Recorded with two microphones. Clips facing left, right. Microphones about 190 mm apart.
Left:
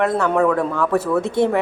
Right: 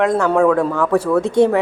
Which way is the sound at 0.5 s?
15° right (ahead or behind).